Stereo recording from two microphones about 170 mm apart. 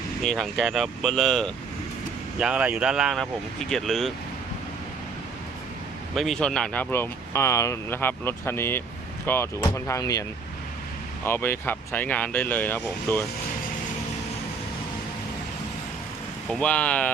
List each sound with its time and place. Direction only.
0.2 s speech: centre (ahead or behind)
6.1 s speech: centre (ahead or behind); by 10.2 s 20° left (ahead or behind)
11.3 s speech: 15° left (ahead or behind)
16.5 s speech: 5° left (ahead or behind)